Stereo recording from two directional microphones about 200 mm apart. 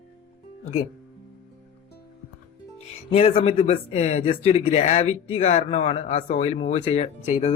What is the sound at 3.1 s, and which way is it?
Speech, 30° left (ahead or behind).